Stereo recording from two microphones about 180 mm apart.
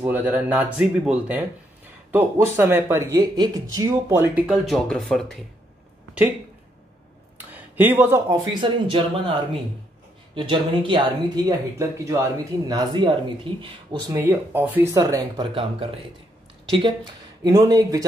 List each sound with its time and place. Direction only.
0.0 s speech: 10° right (ahead or behind)
7.3 s a sound: 10° right (ahead or behind)
8.3 s speech: 25° right (ahead or behind)
12.0 s speech: 20° right (ahead or behind)
14.1 s speech: 15° right (ahead or behind)